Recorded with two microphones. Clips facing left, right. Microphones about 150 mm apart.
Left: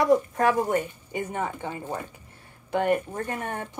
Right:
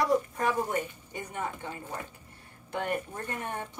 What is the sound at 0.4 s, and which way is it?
A woman's voice, 80° left.